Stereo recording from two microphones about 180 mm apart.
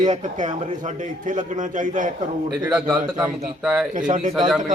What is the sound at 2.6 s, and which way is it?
Speech, 5° right (ahead or behind).